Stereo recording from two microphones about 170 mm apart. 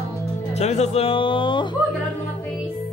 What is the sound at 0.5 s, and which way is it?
Speech, 40° left (ahead or behind).